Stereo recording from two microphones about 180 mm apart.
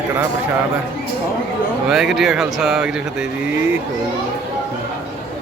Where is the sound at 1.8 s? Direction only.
Centre (ahead or behind).